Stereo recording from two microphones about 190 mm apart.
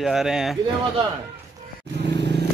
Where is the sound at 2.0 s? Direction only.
65° right (ahead or behind).